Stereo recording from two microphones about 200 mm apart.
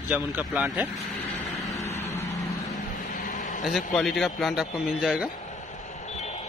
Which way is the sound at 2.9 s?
45° left (ahead or behind).